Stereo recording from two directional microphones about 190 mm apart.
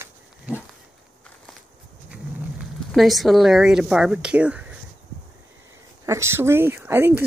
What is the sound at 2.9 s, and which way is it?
Speech, centre (ahead or behind).